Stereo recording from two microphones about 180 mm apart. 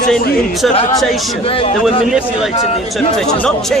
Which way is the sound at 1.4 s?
30° left (ahead or behind).